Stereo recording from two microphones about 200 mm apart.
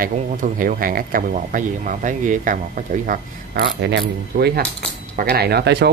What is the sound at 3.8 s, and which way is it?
Speech, 60° right (ahead or behind).